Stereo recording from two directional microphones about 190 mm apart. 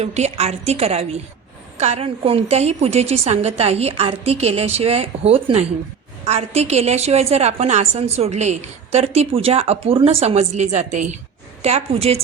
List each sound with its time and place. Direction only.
0.0 s a woman's voice: 35° right (ahead or behind)